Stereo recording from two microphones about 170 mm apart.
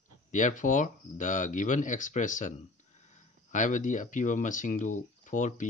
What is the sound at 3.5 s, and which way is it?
Speech, 50° left (ahead or behind).